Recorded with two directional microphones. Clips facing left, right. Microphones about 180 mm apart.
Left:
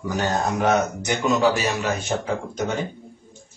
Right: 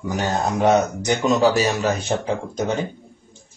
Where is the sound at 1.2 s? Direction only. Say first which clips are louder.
Right 2 dB; 35° right (ahead or behind).